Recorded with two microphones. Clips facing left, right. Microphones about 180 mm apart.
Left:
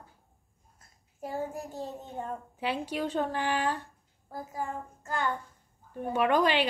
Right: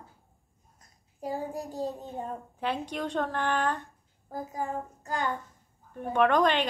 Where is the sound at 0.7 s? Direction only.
15° right (ahead or behind).